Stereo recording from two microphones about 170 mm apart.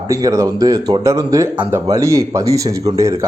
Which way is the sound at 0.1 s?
20° right (ahead or behind).